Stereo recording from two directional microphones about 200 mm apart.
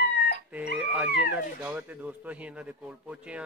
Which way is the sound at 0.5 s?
5° right (ahead or behind).